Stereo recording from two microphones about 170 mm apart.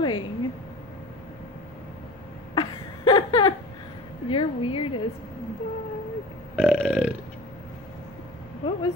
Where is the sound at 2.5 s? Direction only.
30° left (ahead or behind).